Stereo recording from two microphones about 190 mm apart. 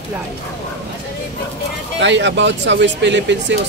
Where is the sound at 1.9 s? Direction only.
70° right (ahead or behind).